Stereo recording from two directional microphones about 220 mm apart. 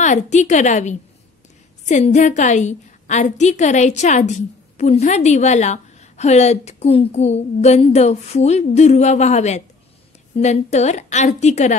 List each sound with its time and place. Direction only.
0.0 s a woman's voice: 30° left (ahead or behind)